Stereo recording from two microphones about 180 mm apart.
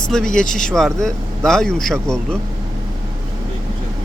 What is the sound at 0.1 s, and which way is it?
Speech, 5° left (ahead or behind).